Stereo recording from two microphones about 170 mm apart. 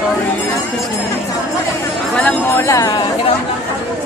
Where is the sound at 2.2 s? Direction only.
15° left (ahead or behind).